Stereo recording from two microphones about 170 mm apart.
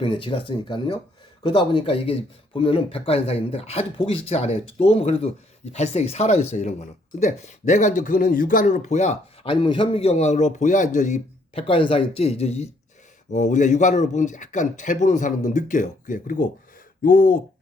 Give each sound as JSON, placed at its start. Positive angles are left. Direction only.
{"t": 0.0, "sound": "speech", "side_deg": 30}
{"t": 11.6, "sound": "a man's voice", "side_deg": 30}